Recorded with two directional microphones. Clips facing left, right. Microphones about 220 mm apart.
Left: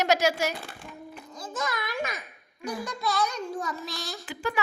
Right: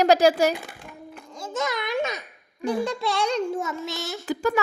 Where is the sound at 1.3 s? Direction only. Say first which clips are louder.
Right 5 dB; 25° right (ahead or behind).